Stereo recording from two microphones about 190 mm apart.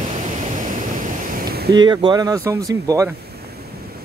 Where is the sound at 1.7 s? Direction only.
20° right (ahead or behind).